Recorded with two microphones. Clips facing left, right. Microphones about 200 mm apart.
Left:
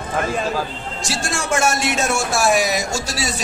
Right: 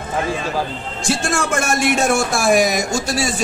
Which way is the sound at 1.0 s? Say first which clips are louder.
Right 5 dB; 55° right (ahead or behind).